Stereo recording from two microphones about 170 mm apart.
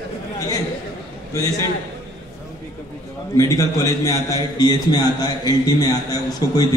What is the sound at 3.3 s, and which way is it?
A man's voice, 20° left (ahead or behind).